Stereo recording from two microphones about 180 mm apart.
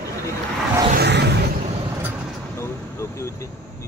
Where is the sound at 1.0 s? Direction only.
70° right (ahead or behind).